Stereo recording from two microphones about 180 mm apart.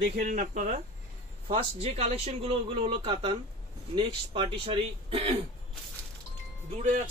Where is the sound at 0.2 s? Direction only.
45° right (ahead or behind).